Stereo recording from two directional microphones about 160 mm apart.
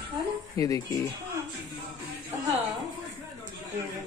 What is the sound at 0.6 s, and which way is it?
Speech, 20° left (ahead or behind).